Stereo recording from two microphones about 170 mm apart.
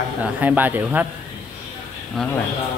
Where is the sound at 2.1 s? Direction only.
5° left (ahead or behind).